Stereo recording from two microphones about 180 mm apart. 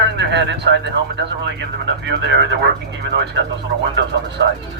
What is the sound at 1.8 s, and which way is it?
Speech, 80° right.